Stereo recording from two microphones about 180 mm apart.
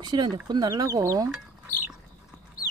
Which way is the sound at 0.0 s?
25° right (ahead or behind).